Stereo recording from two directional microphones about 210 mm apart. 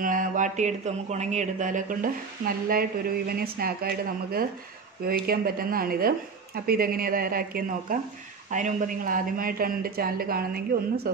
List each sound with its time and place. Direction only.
0.0 s a man's voice: 40° right (ahead or behind)